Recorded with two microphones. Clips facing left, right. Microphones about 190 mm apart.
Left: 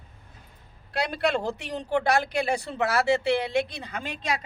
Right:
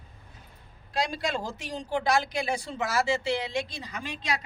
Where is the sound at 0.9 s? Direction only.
65° left (ahead or behind).